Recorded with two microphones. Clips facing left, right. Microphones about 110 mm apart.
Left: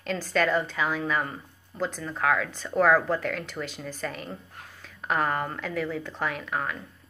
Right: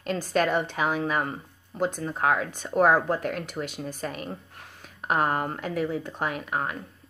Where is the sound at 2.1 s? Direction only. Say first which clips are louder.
Left 2 dB; 30° right (ahead or behind).